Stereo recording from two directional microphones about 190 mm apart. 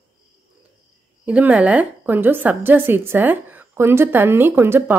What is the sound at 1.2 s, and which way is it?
A woman's voice, 10° right (ahead or behind).